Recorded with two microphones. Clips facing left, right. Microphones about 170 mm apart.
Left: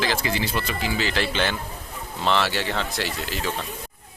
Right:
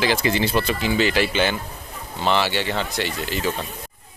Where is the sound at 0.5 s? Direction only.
30° right (ahead or behind).